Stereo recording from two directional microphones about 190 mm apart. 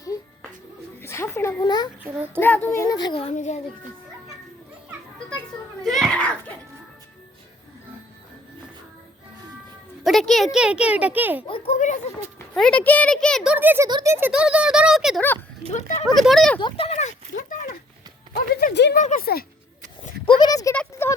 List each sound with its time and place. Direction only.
1.0 s speech: 15° left (ahead or behind)
2.0 s child singing: 10° right (ahead or behind)
2.4 s a child's voice: 10° left (ahead or behind); by 3.6 s 35° left (ahead or behind)
5.8 s speech: centre (ahead or behind)
10.0 s speech: centre (ahead or behind)
11.4 s speech: 30° left (ahead or behind)
12.5 s speech: 5° left (ahead or behind)
15.7 s speech: 40° left (ahead or behind)
16.0 s speech: centre (ahead or behind)
16.6 s speech: 25° left (ahead or behind)
18.3 s speech: 55° left (ahead or behind)
18.9 s speech: 45° left (ahead or behind)
20.2 s a child's voice: 25° left (ahead or behind)